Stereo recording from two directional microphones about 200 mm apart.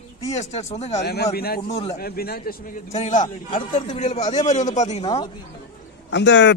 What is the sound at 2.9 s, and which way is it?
Speech, 35° left (ahead or behind).